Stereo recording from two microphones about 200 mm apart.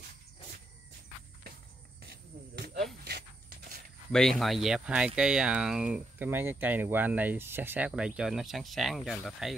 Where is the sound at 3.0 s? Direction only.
50° right (ahead or behind).